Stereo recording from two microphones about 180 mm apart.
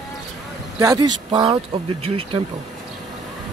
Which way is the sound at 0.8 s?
20° right (ahead or behind).